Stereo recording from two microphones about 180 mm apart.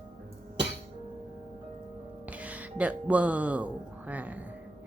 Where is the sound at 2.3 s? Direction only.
10° right (ahead or behind).